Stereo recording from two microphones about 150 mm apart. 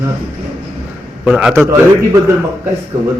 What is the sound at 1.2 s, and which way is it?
Speech, 5° right (ahead or behind).